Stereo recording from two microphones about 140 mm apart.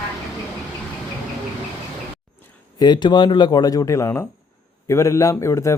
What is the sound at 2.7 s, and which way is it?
Speech, 30° left (ahead or behind).